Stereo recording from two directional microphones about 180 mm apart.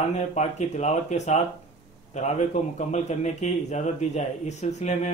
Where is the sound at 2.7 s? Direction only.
40° left (ahead or behind).